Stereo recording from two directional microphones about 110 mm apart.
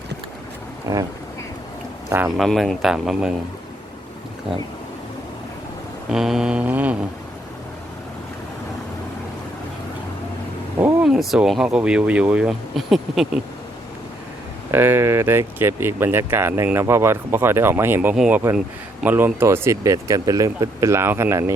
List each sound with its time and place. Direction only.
0.9 s speech: 25° right (ahead or behind)
2.0 s speech: 20° right (ahead or behind)
2.4 s speech: centre (ahead or behind)
6.1 s speech: 5° right (ahead or behind)
11.0 s speech: 5° right (ahead or behind)
14.7 s speech: 20° right (ahead or behind)
18.1 s speech: 5° right (ahead or behind)
19.0 s speech: 20° right (ahead or behind)